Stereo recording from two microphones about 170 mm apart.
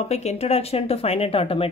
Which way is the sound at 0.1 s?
40° left (ahead or behind).